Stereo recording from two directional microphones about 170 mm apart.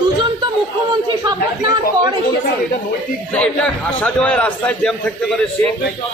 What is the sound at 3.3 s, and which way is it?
A man's voice, 5° left (ahead or behind).